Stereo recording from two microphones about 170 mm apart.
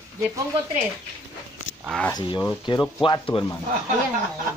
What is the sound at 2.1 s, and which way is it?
Speech, 25° left (ahead or behind).